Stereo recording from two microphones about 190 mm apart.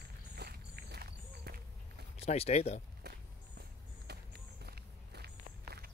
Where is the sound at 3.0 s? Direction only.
60° right (ahead or behind).